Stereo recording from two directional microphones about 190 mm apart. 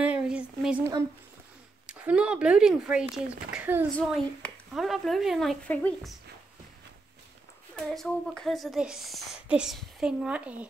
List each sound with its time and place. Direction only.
0.0 s a sound: 5° right (ahead or behind)
1.9 s a woman's voice: 5° right (ahead or behind)
3.9 s a woman's voice: 5° left (ahead or behind)
7.7 s a woman's voice: centre (ahead or behind)